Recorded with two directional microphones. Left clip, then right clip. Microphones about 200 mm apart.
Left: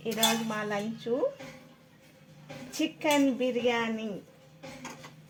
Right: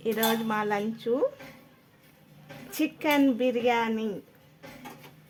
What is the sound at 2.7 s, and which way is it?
A woman's voice, 25° right (ahead or behind).